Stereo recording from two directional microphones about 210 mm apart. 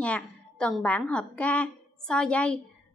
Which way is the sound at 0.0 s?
5° left (ahead or behind).